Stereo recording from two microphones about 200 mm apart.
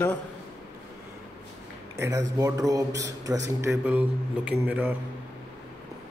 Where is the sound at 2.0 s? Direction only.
15° right (ahead or behind).